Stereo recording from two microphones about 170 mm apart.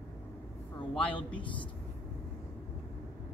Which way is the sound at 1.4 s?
30° left (ahead or behind).